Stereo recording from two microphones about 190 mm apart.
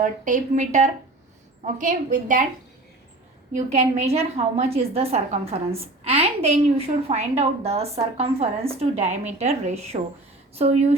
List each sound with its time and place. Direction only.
0.0 s a woman's voice: 40° right (ahead or behind)
3.5 s a woman's voice: 35° right (ahead or behind)